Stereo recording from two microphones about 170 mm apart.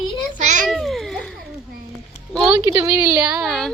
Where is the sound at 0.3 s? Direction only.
45° right (ahead or behind).